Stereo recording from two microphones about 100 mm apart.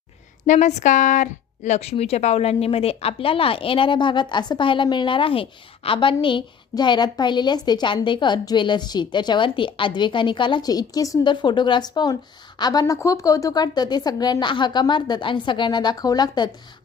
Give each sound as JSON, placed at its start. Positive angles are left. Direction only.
{"t": 1.8, "sound": "speech", "side_deg": 90}
{"t": 11.2, "sound": "a woman's voice", "side_deg": 50}
{"t": 12.8, "sound": "speech", "side_deg": 30}